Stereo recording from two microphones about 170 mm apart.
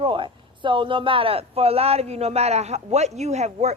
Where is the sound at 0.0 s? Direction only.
30° right (ahead or behind).